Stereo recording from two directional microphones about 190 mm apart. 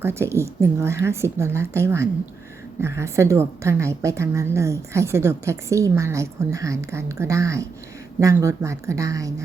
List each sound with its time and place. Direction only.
0.0 s a woman's voice: 15° right (ahead or behind)